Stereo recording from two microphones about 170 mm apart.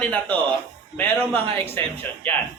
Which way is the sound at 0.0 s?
10° left (ahead or behind).